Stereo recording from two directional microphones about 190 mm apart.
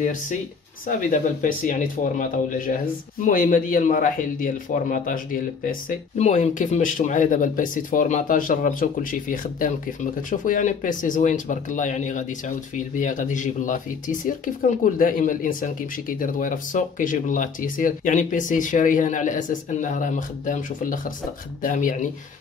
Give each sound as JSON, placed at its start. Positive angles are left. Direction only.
{"t": 0.0, "sound": "a man's voice", "side_deg": 45}